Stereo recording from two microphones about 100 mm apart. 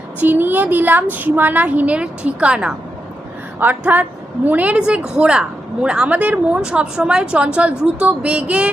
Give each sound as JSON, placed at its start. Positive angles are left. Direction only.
{"t": 0.2, "sound": "speech", "side_deg": -20}